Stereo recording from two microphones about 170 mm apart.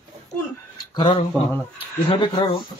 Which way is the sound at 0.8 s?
25° left (ahead or behind).